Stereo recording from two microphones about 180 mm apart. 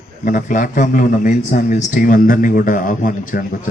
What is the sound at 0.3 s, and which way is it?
A man's voice, 45° left (ahead or behind).